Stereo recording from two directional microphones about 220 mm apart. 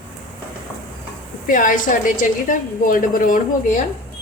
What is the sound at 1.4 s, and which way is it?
A woman's voice, 40° left (ahead or behind).